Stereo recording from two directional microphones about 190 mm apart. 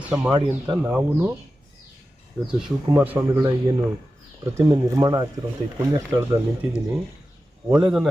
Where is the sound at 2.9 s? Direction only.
10° right (ahead or behind).